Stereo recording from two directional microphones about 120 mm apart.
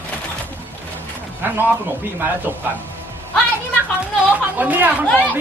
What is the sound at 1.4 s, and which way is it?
Speech, 15° right (ahead or behind).